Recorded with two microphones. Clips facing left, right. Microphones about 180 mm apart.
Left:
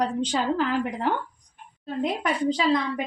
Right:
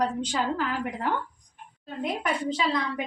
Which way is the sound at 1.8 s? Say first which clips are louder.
Left 3 dB; 30° left (ahead or behind).